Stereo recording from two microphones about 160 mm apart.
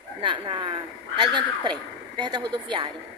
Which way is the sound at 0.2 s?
30° right (ahead or behind).